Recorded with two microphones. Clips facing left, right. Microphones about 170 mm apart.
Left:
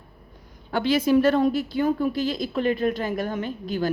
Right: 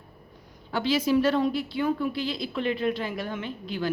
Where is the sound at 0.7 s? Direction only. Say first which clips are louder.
Left 4 dB; 55° left (ahead or behind).